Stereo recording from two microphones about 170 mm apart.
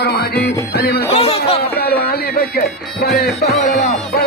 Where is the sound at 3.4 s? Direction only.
40° left (ahead or behind).